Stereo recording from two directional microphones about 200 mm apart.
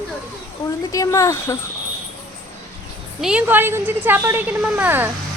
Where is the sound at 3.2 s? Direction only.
5° right (ahead or behind).